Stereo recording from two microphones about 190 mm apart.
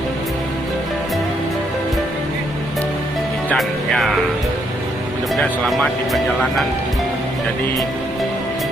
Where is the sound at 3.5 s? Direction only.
Centre (ahead or behind).